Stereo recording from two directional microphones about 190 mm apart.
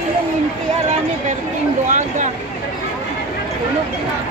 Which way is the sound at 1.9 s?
40° right (ahead or behind).